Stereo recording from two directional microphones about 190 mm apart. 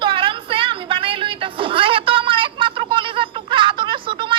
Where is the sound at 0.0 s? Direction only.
25° right (ahead or behind).